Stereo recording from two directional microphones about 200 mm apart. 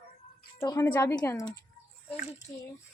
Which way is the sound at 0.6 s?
15° left (ahead or behind).